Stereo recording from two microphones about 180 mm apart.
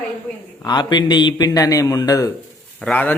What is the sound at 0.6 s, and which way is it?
A man's voice, 25° left (ahead or behind).